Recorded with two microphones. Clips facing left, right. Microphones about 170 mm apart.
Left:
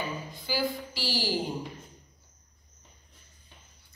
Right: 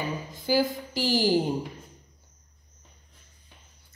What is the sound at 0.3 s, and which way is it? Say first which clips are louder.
A woman's voice: right 8 dB; 45° right (ahead or behind).